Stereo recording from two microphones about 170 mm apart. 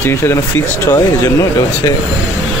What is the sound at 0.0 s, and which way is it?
Speech, 15° left (ahead or behind).